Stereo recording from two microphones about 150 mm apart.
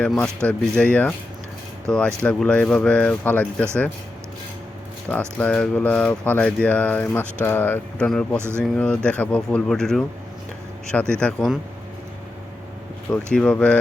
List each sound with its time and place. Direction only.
0.0 s speech: 5° left (ahead or behind)
5.4 s speech: 10° left (ahead or behind)
8.4 s speech: 15° right (ahead or behind)
8.6 s speech: 5° left (ahead or behind)
11.1 s speech: 5° left (ahead or behind)
13.3 s speech: 5° left (ahead or behind)